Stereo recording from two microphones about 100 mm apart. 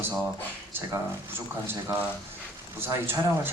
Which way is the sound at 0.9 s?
20° right (ahead or behind).